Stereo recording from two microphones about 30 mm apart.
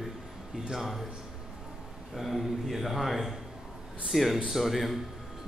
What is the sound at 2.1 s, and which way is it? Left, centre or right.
A man's voice, centre.